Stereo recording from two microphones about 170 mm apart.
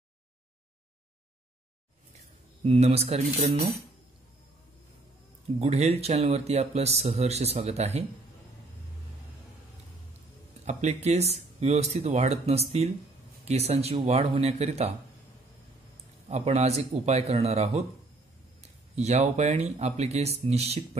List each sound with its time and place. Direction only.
2.6 s speech: 35° right (ahead or behind)
5.6 s speech: 40° right (ahead or behind)
10.6 s speech: 40° right (ahead or behind)
16.3 s speech: 40° right (ahead or behind)
18.9 s speech: 40° right (ahead or behind)